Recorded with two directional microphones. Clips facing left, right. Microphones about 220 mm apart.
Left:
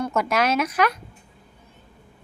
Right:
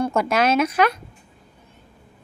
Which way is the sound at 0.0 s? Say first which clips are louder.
Right 3 dB; 30° right (ahead or behind).